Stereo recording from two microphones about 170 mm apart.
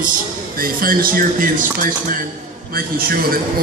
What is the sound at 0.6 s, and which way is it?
Speech, 55° right (ahead or behind).